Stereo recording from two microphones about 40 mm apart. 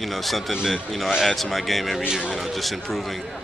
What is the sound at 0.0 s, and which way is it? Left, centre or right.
Speech, centre.